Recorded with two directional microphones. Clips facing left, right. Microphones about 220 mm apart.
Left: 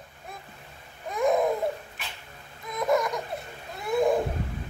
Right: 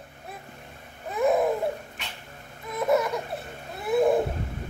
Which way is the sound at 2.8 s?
5° right (ahead or behind).